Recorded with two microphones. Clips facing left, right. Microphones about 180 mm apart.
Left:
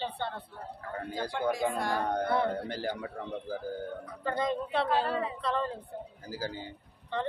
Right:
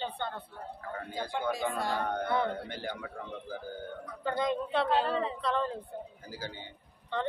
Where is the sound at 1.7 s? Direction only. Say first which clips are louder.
Left 1 dB; 15° left (ahead or behind).